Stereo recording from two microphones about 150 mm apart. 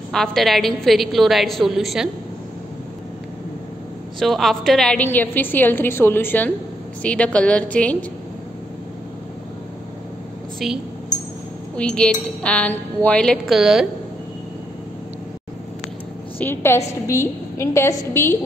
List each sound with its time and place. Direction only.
0.1 s a woman's voice: centre (ahead or behind)
4.2 s a woman's voice: centre (ahead or behind)
11.7 s a woman's voice: 5° left (ahead or behind)
16.3 s a woman's voice: 15° left (ahead or behind)